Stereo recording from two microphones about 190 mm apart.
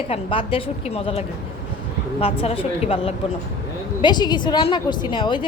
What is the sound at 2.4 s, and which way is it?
A woman's voice, 30° left (ahead or behind).